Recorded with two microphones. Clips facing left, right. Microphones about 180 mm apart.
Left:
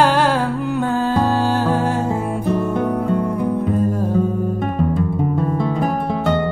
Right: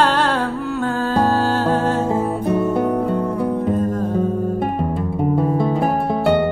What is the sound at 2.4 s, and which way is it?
Music, 10° right (ahead or behind).